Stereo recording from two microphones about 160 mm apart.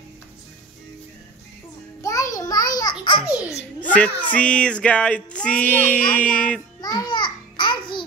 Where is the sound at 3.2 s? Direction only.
5° right (ahead or behind).